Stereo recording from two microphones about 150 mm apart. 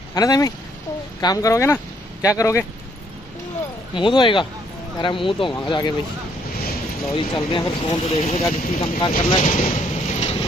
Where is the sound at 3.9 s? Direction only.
30° left (ahead or behind).